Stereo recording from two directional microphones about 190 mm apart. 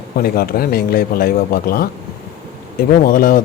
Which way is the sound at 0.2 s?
55° left (ahead or behind).